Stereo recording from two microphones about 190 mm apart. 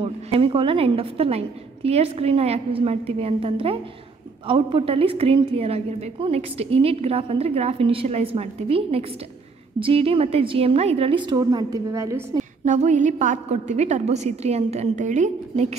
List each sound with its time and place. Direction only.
0.0 s a woman's voice: 30° right (ahead or behind)
12.6 s a woman's voice: 40° right (ahead or behind)